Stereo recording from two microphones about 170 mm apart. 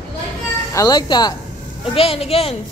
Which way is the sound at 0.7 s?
25° left (ahead or behind).